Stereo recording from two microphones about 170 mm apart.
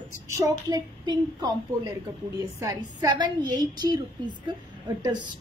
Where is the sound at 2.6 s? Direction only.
20° right (ahead or behind).